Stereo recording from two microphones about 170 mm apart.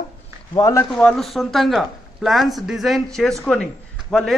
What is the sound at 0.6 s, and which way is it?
Speech, 20° left (ahead or behind).